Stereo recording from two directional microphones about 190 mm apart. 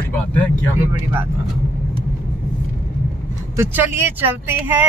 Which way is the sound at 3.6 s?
10° right (ahead or behind).